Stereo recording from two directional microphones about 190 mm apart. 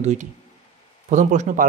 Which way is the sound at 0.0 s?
40° right (ahead or behind).